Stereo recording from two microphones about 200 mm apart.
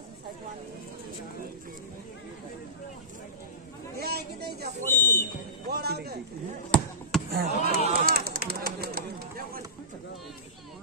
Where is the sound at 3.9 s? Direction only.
50° right (ahead or behind).